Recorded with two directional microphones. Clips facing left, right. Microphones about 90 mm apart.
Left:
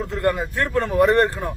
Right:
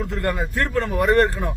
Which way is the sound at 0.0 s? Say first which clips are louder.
Left 2 dB; 20° left (ahead or behind).